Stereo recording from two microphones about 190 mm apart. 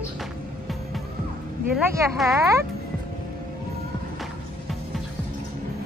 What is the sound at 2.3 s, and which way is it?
Speech, 15° right (ahead or behind).